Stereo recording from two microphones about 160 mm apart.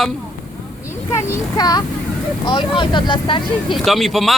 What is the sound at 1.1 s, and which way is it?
Speech, 20° left (ahead or behind).